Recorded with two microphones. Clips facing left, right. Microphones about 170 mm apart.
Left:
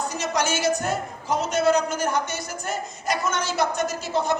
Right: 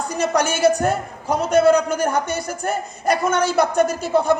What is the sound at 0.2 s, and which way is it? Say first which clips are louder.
A man's voice: right 8 dB; 55° right (ahead or behind).